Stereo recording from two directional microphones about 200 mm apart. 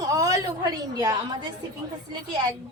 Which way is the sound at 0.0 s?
15° right (ahead or behind).